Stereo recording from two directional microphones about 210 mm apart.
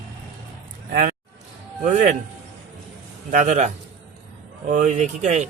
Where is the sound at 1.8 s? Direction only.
35° right (ahead or behind).